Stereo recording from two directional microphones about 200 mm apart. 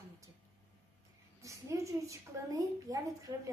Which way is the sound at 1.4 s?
15° right (ahead or behind).